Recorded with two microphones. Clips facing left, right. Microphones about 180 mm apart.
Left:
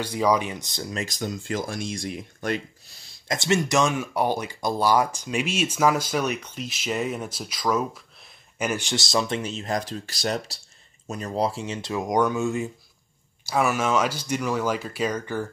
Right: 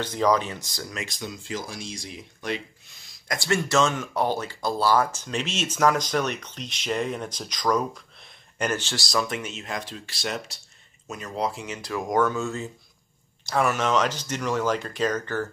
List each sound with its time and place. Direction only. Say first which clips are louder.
0.0 s speech: even; 10° left (ahead or behind)
0.7 s speech: left 3 dB; 20° left (ahead or behind)
0.9 s speech: left 6 dB; 40° left (ahead or behind)
2.9 s speech: left 3 dB; 30° left (ahead or behind); by 15.4 s 10° left (ahead or behind)